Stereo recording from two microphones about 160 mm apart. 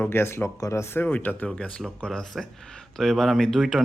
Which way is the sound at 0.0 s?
15° left (ahead or behind).